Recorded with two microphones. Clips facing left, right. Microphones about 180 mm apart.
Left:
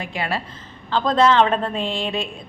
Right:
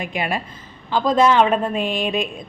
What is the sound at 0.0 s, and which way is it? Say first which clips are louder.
A woman's voice: right 2 dB; 15° right (ahead or behind).